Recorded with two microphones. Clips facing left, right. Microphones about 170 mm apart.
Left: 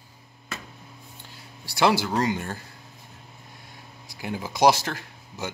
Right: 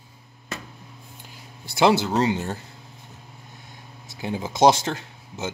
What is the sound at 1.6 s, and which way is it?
Speech, 20° right (ahead or behind).